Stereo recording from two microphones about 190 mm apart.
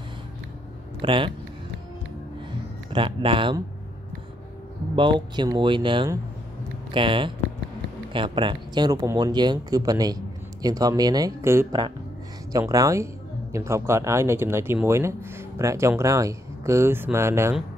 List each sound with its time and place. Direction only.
1.0 s speech: 25° right (ahead or behind)
2.9 s speech: 25° right (ahead or behind)
4.9 s speech: 25° right (ahead or behind)